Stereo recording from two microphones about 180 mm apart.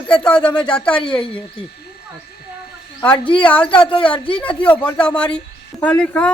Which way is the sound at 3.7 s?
30° left (ahead or behind).